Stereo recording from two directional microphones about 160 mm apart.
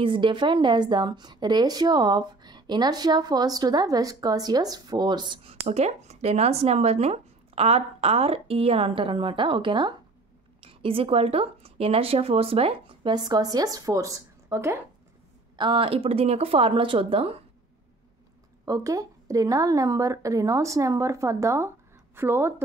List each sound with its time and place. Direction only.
0.0 s a woman's voice: 30° right (ahead or behind)
15.5 s speech: 30° right (ahead or behind)
18.7 s a woman's voice: 20° right (ahead or behind)